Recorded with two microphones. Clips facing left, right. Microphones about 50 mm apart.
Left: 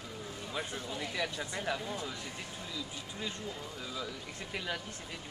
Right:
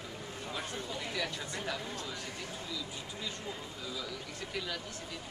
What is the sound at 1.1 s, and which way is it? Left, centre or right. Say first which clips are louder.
Speech: left 2 dB; centre.